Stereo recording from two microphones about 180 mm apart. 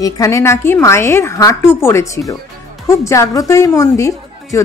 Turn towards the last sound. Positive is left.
turn(degrees=15)  # may be behind; listen again after turning